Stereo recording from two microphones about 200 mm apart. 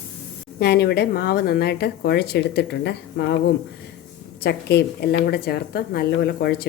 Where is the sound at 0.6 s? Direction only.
55° left (ahead or behind).